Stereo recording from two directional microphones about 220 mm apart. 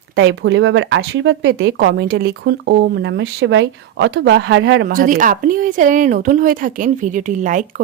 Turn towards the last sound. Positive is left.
turn(degrees=-35)  # may be behind; listen again after turning